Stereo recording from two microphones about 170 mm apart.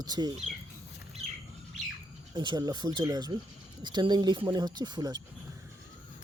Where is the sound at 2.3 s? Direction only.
25° right (ahead or behind).